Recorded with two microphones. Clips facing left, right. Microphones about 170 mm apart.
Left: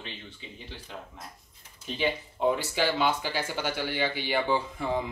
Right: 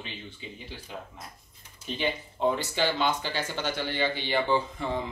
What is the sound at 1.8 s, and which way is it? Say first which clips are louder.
Speech: left 1 dB; 5° left (ahead or behind).